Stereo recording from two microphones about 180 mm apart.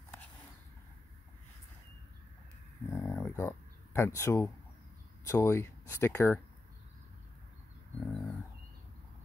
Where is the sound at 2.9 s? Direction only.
15° left (ahead or behind).